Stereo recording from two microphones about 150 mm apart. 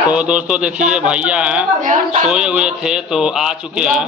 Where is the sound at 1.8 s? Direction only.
55° right (ahead or behind).